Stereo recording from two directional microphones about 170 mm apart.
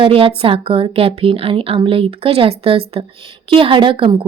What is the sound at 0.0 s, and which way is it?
A woman's voice, 30° right (ahead or behind).